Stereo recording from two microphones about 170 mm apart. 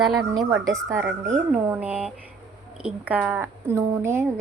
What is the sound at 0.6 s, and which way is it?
A woman's voice, 20° right (ahead or behind).